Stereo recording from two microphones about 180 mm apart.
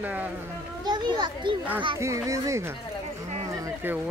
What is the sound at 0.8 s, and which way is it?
A child's voice, 25° right (ahead or behind).